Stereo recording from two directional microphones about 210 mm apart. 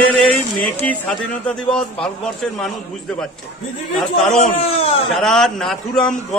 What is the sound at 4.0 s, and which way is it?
Speech, centre (ahead or behind).